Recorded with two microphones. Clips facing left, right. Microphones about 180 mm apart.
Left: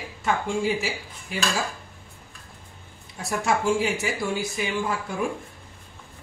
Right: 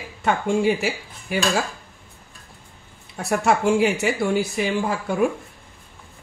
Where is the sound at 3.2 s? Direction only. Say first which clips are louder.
Right 5 dB; 65° right (ahead or behind).